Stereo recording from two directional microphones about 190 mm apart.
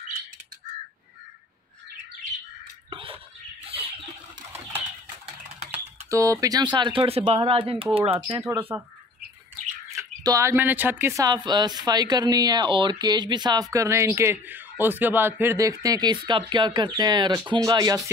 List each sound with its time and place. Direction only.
2.9 s a sound: 30° right (ahead or behind)
5.7 s speech: 15° right (ahead or behind)
8.5 s speech: 10° right (ahead or behind)
9.9 s speech: 15° right (ahead or behind)